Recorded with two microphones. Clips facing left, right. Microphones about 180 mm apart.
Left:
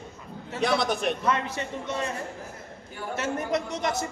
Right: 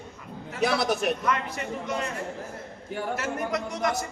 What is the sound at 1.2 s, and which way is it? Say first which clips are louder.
Speech: left 1 dB; 25° left (ahead or behind).